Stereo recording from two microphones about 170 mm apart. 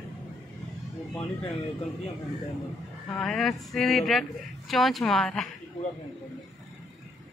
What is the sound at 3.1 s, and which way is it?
A woman's voice, 5° left (ahead or behind).